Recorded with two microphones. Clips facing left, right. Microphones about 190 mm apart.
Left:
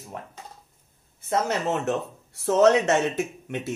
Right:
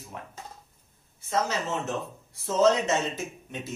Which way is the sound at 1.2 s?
55° left (ahead or behind).